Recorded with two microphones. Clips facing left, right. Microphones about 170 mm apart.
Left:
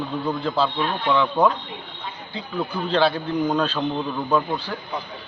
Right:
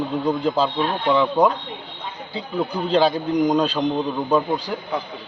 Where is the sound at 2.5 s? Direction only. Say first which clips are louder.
Right 3 dB; 15° right (ahead or behind).